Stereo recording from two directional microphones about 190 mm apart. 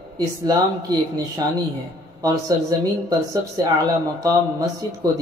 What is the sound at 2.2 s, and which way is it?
Speech, 20° right (ahead or behind).